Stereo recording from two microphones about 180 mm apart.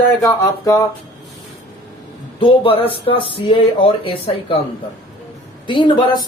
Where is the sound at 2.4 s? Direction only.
30° left (ahead or behind).